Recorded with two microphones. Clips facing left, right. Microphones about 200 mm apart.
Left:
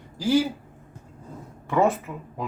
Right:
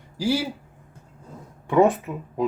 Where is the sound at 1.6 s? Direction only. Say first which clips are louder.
Right 4 dB; 15° right (ahead or behind).